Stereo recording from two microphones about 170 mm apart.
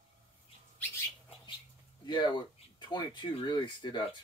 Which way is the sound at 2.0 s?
25° left (ahead or behind).